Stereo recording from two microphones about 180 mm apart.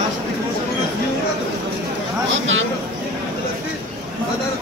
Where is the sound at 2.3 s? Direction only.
90° right.